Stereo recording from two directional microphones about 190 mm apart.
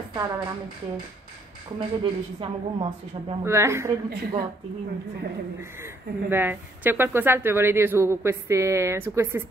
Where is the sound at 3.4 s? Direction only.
15° right (ahead or behind).